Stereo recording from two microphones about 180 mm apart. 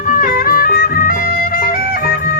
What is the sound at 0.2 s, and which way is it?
Music, 50° left (ahead or behind).